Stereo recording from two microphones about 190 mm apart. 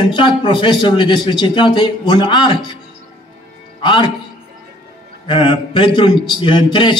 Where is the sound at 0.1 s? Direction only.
25° left (ahead or behind).